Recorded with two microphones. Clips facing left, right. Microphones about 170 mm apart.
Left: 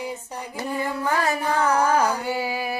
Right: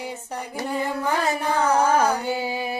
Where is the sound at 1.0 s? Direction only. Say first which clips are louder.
Left 2 dB; 20° right (ahead or behind).